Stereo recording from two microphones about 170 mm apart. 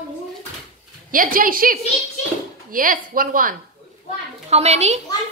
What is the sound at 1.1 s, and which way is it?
A woman's voice, 55° right (ahead or behind).